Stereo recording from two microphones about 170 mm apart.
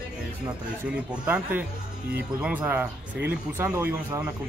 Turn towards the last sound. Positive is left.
turn(degrees=-10)  # may be behind; listen again after turning